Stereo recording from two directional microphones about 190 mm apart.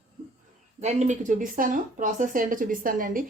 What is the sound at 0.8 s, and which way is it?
Speech, 35° right (ahead or behind).